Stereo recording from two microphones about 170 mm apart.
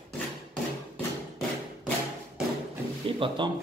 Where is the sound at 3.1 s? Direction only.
30° right (ahead or behind).